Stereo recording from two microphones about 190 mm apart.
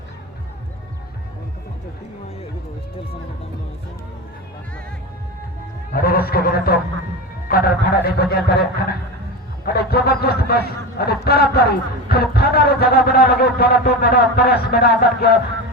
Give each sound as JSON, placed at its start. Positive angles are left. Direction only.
{"t": 5.9, "sound": "a man's voice", "side_deg": 55}